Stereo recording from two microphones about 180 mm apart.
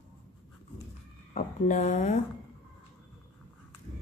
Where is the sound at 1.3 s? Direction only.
40° left (ahead or behind).